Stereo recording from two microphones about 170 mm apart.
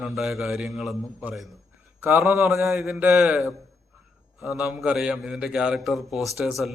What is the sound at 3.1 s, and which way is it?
A man's voice, 5° right (ahead or behind).